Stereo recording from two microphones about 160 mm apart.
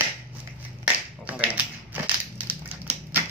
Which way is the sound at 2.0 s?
10° right (ahead or behind).